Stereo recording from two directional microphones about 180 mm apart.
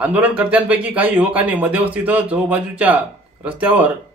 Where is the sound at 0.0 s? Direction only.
10° right (ahead or behind).